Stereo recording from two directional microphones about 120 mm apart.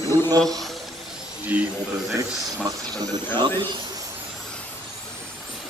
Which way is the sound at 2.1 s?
30° right (ahead or behind).